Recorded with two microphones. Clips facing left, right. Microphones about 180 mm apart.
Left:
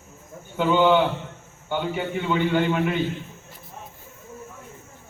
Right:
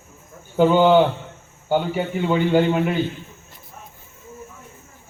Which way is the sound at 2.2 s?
35° right (ahead or behind).